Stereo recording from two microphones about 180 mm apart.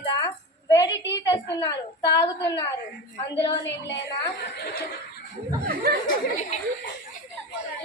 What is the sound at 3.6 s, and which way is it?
Speech, 75° left (ahead or behind).